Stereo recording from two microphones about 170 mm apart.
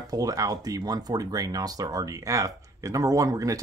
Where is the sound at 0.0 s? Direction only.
20° right (ahead or behind).